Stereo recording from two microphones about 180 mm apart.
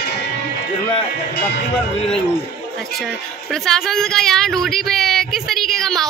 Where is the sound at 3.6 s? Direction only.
Centre (ahead or behind).